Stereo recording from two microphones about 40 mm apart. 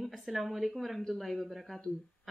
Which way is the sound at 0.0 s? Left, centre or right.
Centre.